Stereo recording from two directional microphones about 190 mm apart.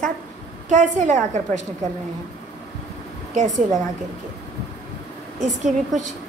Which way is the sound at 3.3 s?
40° right (ahead or behind).